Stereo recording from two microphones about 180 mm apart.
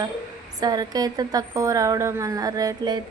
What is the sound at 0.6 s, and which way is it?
A woman's voice, 20° right (ahead or behind).